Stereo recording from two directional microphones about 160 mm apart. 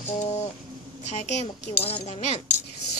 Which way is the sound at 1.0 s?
45° left (ahead or behind).